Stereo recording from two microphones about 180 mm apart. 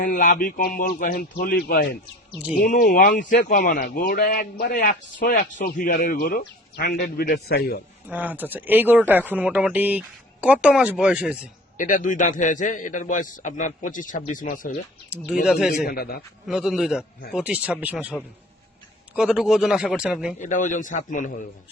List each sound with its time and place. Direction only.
0.0 s a man's voice: 45° left (ahead or behind)
8.1 s speech: 10° right (ahead or behind)
11.8 s a man's voice: 45° left (ahead or behind)
15.4 s speech: 5° right (ahead or behind)
15.9 s a man's voice: 55° left (ahead or behind)
16.5 s speech: 5° right (ahead or behind)
20.4 s a man's voice: 45° left (ahead or behind)